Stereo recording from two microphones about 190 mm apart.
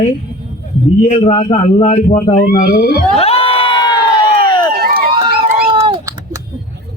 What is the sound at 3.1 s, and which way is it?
Crowd, 30° left (ahead or behind).